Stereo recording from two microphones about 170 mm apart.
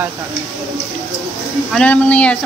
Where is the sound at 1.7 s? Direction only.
10° left (ahead or behind).